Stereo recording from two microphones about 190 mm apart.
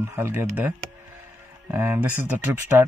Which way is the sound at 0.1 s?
15° right (ahead or behind).